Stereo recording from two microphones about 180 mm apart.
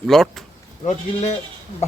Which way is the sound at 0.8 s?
40° left (ahead or behind).